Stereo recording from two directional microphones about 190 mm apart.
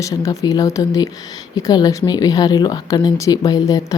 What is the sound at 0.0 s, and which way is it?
Speech, 20° left (ahead or behind).